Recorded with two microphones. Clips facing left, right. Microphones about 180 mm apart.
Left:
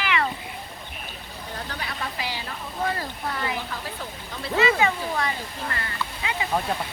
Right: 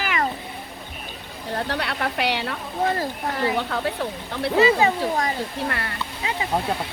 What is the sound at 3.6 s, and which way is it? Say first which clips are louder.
Speech: right 8 dB; 65° right (ahead or behind).